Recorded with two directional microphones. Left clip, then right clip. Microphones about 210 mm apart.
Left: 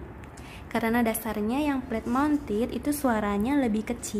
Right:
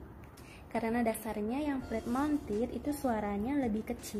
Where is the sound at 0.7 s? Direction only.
Centre (ahead or behind).